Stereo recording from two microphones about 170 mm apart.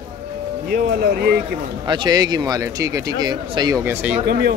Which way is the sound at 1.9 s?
25° right (ahead or behind).